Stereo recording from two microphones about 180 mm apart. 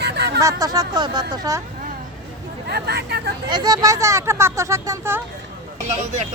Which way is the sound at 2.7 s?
65° right (ahead or behind).